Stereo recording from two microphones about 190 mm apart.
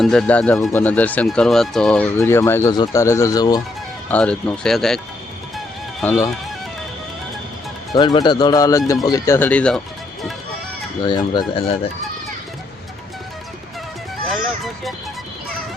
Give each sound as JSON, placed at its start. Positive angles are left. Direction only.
{"t": 0.0, "sound": "speech", "side_deg": 0}
{"t": 2.1, "sound": "speech", "side_deg": 15}
{"t": 4.1, "sound": "speech", "side_deg": 5}
{"t": 5.5, "sound": "music", "side_deg": 10}
{"t": 7.9, "sound": "speech", "side_deg": 25}
{"t": 11.0, "sound": "speech", "side_deg": 20}
{"t": 14.3, "sound": "music", "side_deg": 0}